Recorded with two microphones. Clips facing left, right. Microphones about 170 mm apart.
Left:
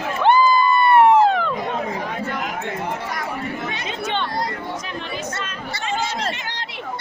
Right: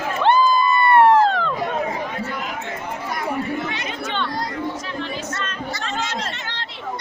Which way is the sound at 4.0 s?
20° left (ahead or behind).